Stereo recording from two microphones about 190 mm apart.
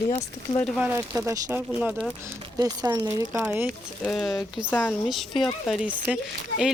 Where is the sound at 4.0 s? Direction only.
5° left (ahead or behind).